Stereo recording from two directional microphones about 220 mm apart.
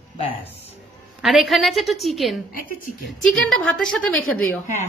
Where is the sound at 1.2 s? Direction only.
Centre (ahead or behind).